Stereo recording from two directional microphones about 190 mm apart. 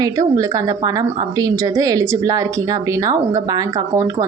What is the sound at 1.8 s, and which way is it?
Speech, 20° right (ahead or behind).